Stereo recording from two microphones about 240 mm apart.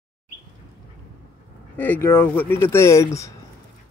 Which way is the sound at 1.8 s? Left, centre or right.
Centre.